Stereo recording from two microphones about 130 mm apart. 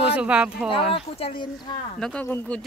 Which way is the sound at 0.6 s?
40° left (ahead or behind).